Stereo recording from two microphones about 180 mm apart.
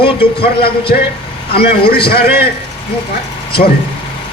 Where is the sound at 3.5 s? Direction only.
60° left (ahead or behind).